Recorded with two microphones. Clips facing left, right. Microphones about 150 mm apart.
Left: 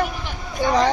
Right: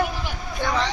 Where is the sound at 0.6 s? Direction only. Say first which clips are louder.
Left 5 dB; 10° left (ahead or behind).